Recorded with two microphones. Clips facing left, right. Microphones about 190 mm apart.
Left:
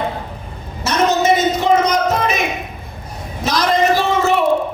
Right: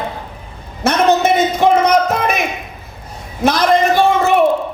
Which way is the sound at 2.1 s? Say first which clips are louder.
Right 1 dB; 60° right (ahead or behind).